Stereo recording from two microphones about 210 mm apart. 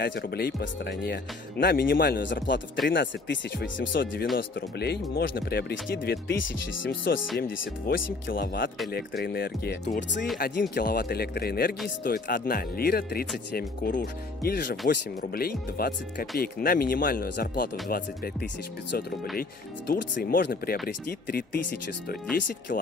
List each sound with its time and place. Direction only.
0.0 s speech: 50° left (ahead or behind)
3.9 s speech: 50° left (ahead or behind)
7.9 s speech: 45° left (ahead or behind)
19.9 s speech: 45° left (ahead or behind)